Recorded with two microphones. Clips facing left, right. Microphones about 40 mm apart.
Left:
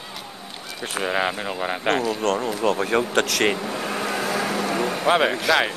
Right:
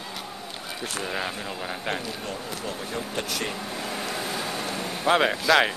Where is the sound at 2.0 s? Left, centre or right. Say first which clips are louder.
Left 11 dB; left.